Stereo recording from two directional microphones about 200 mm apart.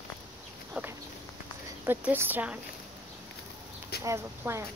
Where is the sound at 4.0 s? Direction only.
15° right (ahead or behind).